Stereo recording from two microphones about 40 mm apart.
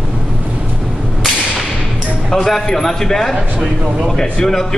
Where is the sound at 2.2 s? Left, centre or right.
Centre.